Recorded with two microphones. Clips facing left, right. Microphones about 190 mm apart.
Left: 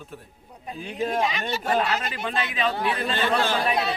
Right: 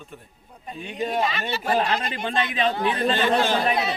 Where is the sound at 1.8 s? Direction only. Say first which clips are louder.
Right 1 dB; 30° right (ahead or behind).